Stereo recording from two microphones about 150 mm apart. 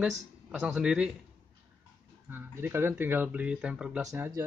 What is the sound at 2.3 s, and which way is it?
Speech, 15° right (ahead or behind).